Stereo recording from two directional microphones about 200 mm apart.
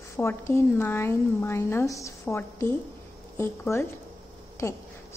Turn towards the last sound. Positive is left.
turn(degrees=15)  # may be behind; listen again after turning